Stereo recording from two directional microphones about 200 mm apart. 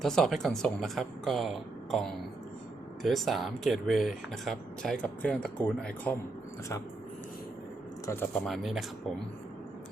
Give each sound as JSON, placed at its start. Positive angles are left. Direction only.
{"t": 0.0, "sound": "speech", "side_deg": 0}
{"t": 8.0, "sound": "speech", "side_deg": 10}